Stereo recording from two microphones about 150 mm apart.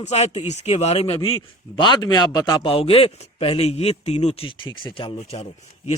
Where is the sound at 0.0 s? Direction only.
45° left (ahead or behind).